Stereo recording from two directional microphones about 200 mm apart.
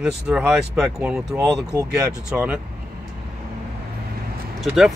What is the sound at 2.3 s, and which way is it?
Speech, 5° right (ahead or behind).